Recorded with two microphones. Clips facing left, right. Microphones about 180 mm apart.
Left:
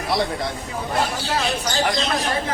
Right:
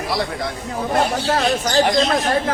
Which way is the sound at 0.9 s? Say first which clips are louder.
Right 4 dB; 45° right (ahead or behind).